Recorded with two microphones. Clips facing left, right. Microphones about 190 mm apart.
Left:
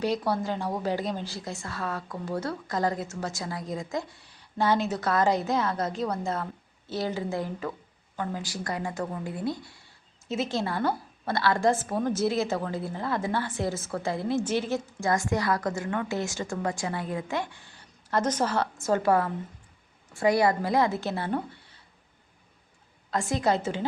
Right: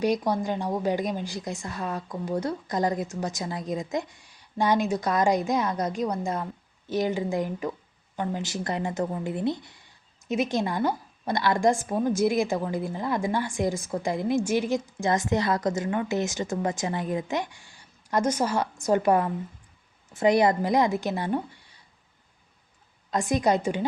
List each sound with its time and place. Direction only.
0.0 s a woman's voice: 15° right (ahead or behind)
23.1 s a woman's voice: 15° right (ahead or behind)